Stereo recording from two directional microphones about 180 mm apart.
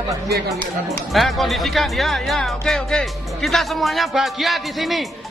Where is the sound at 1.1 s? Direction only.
Centre (ahead or behind).